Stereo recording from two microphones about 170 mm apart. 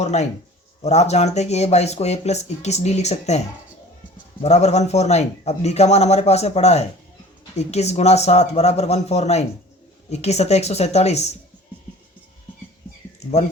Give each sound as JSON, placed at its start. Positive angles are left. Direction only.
{"t": 0.0, "sound": "speech", "side_deg": 40}
{"t": 4.4, "sound": "speech", "side_deg": 40}